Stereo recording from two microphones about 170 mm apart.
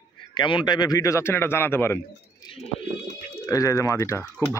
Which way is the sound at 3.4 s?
20° left (ahead or behind).